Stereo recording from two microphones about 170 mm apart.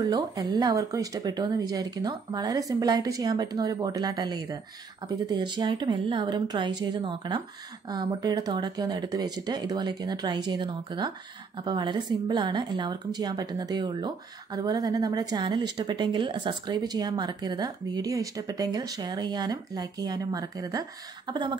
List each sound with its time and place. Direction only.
0.0 s speech: 25° right (ahead or behind)